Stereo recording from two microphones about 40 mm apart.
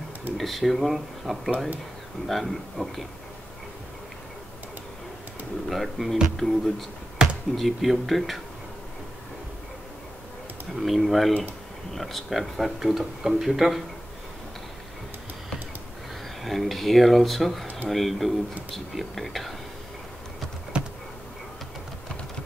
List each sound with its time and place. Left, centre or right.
0.4 s speech: centre
5.7 s speech: centre
7.2 s basketball bounce: centre
7.5 s speech: centre
10.8 s speech: centre
16.4 s speech: centre
20.7 s a sound: right